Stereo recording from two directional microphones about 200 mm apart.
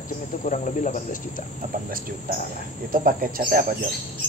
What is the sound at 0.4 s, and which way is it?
Cricket, 40° left (ahead or behind).